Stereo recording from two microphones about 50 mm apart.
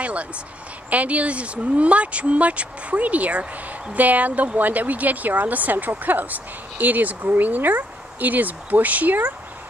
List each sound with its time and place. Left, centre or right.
0.0 s a woman's voice: right